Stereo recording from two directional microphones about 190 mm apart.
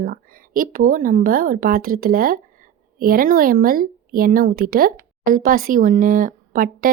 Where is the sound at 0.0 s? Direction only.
50° right (ahead or behind).